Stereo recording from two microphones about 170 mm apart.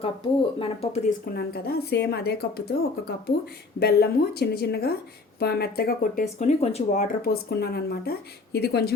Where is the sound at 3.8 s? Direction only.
70° left (ahead or behind).